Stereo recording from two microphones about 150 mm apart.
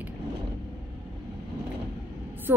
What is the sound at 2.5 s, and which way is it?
Speech, 15° right (ahead or behind).